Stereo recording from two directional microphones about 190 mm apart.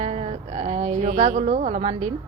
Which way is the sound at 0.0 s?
35° right (ahead or behind).